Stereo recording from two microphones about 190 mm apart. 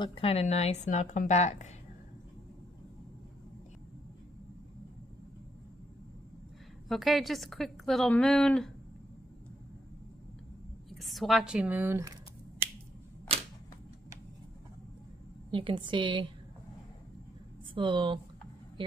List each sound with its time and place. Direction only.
0.0 s a woman's voice: 30° left (ahead or behind)
6.9 s a woman's voice: centre (ahead or behind)
10.9 s a woman's voice: centre (ahead or behind)
15.5 s a woman's voice: 25° right (ahead or behind)
17.7 s a woman's voice: 25° right (ahead or behind)